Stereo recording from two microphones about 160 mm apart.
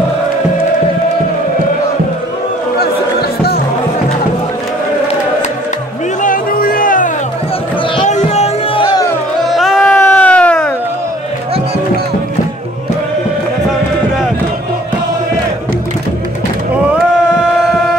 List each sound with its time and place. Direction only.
2.8 s music: 80° left
6.2 s music: 60° left (ahead or behind)
8.0 s music: 45° left (ahead or behind)
9.5 s music: centre (ahead or behind)
9.9 s a sound: 10° left (ahead or behind)